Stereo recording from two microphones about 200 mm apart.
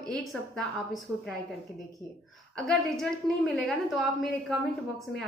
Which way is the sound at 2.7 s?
Centre (ahead or behind).